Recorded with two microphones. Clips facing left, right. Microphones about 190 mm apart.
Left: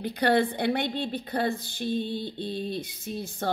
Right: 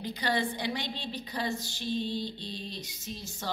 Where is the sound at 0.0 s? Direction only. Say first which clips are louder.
Left 7 dB; 60° left (ahead or behind).